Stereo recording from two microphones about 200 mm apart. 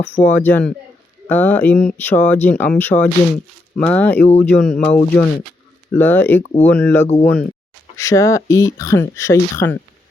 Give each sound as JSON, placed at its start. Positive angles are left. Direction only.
{"t": 0.2, "sound": "speech", "side_deg": 5}
{"t": 6.4, "sound": "speech", "side_deg": 35}
{"t": 6.7, "sound": "speech", "side_deg": 5}